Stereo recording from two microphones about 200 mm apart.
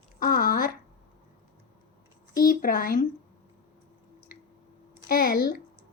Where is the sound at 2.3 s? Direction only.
45° left (ahead or behind).